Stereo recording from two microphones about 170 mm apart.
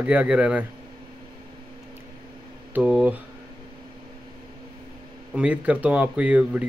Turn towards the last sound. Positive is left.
turn(degrees=-5)  # may be behind; listen again after turning